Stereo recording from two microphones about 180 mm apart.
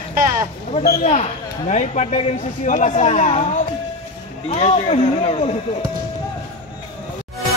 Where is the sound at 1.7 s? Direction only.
40° left (ahead or behind).